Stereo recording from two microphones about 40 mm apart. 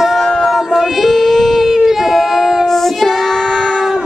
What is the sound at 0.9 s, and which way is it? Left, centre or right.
Child singing, centre.